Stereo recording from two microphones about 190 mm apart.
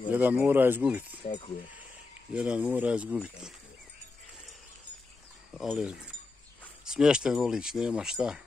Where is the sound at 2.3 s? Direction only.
5° right (ahead or behind).